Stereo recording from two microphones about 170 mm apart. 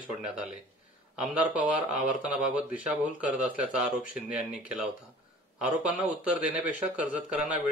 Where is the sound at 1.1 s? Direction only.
5° right (ahead or behind).